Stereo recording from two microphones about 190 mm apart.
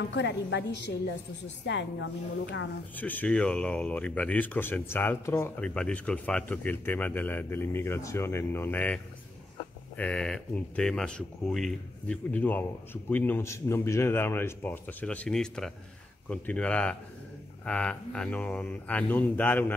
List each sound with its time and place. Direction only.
0.1 s a woman's voice: 65° left (ahead or behind)
3.0 s speech: 10° left (ahead or behind)